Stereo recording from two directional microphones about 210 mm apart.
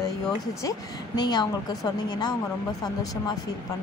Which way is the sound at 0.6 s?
15° left (ahead or behind).